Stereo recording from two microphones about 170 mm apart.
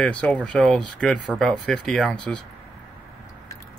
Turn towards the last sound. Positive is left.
turn(degrees=5)  # may be behind; listen again after turning